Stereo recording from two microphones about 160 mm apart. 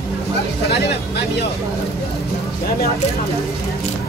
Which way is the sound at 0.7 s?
90° left.